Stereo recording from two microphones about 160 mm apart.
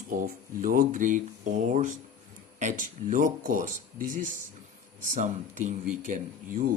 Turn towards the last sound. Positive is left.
turn(degrees=-60)  # may be behind; listen again after turning